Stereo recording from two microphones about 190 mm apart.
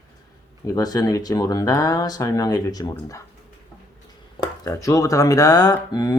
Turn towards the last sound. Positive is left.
turn(degrees=20)  # may be behind; listen again after turning